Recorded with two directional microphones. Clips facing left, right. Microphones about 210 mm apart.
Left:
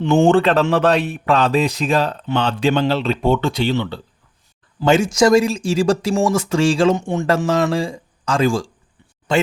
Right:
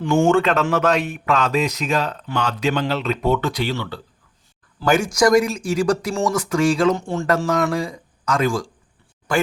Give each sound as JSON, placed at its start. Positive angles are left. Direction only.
{"t": 0.0, "sound": "speech", "side_deg": 30}